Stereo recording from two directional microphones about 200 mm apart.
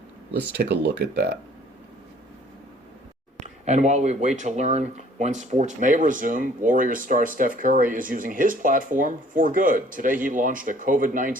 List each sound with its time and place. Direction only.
0.5 s speech: 55° right (ahead or behind)
3.4 s speech: 35° right (ahead or behind)